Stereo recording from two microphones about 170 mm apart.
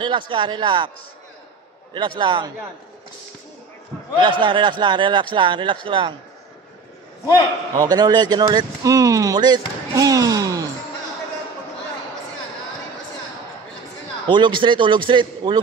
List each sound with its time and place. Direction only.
0.0 s speech: 30° right (ahead or behind)
2.0 s speech: 25° right (ahead or behind)
4.2 s speech: 30° right (ahead or behind)
7.7 s speech: 20° right (ahead or behind)
9.9 s a sound: 20° right (ahead or behind)
14.2 s speech: 30° right (ahead or behind)